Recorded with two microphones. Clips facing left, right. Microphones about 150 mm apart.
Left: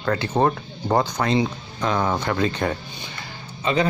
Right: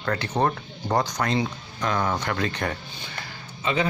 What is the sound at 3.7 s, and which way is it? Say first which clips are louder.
Speech: left 4 dB; 35° left (ahead or behind).